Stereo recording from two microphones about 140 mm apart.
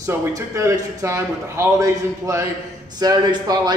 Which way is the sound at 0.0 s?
25° right (ahead or behind).